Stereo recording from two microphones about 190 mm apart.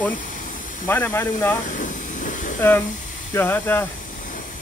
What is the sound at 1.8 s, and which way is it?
Hiss, 40° left (ahead or behind).